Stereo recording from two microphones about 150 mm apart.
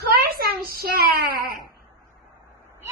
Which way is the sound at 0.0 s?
90° right.